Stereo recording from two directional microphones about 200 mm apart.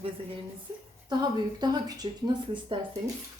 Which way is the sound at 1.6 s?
20° right (ahead or behind).